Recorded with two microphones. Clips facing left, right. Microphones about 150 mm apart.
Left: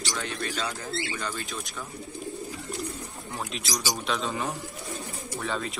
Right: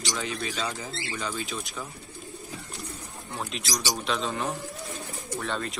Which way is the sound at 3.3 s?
Centre (ahead or behind).